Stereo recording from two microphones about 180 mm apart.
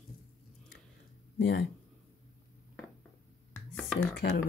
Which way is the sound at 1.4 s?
70° left (ahead or behind).